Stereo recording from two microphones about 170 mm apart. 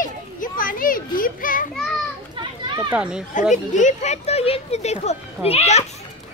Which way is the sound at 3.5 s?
45° left (ahead or behind).